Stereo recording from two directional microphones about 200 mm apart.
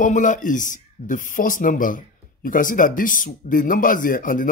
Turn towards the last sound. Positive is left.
turn(degrees=40)  # may be behind; listen again after turning